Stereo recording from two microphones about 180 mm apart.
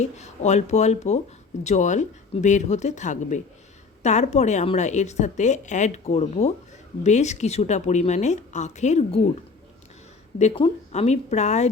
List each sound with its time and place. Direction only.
0.0 s a woman's voice: 40° left (ahead or behind)
10.3 s a woman's voice: 35° left (ahead or behind)